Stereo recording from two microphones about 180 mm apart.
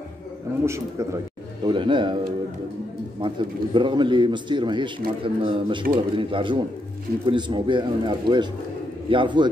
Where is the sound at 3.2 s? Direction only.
25° right (ahead or behind).